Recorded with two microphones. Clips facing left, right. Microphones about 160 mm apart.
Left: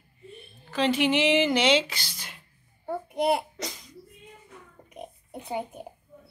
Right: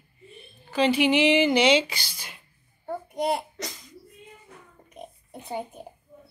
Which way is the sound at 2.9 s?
10° left (ahead or behind).